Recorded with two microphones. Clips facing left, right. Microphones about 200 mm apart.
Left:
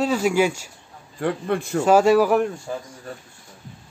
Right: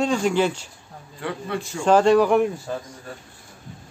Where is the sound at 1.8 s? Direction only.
5° left (ahead or behind).